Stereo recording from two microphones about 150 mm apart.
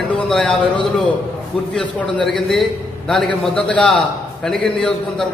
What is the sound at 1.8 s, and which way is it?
A man's voice, 5° left (ahead or behind).